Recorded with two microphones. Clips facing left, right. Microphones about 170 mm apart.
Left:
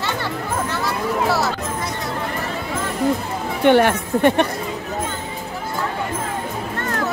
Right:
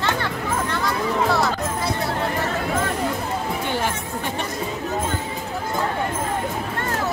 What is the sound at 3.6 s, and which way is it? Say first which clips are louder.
Speech: left 10 dB; 65° left (ahead or behind).